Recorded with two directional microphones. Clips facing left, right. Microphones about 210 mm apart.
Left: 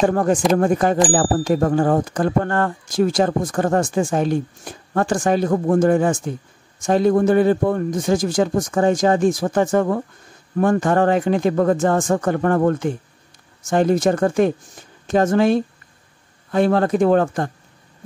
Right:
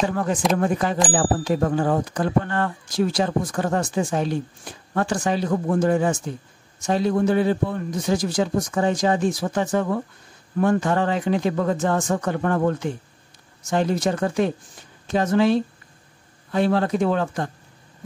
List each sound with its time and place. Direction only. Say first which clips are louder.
0.0 s speech: left 6 dB; 45° left (ahead or behind)